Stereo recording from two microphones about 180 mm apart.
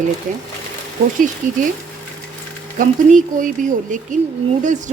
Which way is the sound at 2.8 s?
45° right (ahead or behind).